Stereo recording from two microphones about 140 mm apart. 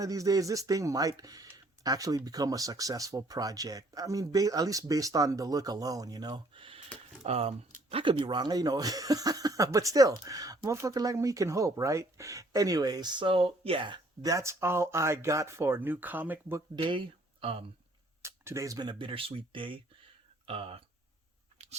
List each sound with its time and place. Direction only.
0.0 s speech: 25° right (ahead or behind)
16.7 s speech: 35° right (ahead or behind)
18.2 s speech: 20° right (ahead or behind); by 20.8 s 45° right (ahead or behind)
21.6 s crunch: 50° right (ahead or behind)